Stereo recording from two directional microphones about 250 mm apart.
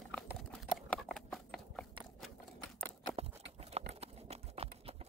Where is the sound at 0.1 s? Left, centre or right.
Centre.